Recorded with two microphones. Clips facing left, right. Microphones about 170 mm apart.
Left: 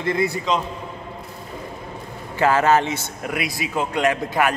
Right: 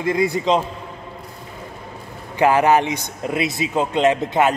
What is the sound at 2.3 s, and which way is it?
A man's voice, 15° right (ahead or behind).